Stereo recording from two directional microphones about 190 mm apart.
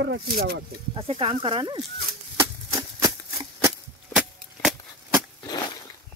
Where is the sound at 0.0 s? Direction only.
60° right (ahead or behind).